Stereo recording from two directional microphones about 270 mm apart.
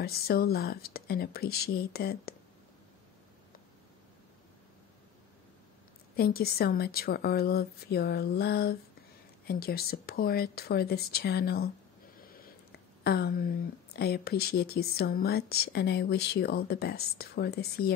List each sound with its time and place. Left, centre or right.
0.0 s speech: left
6.1 s speech: left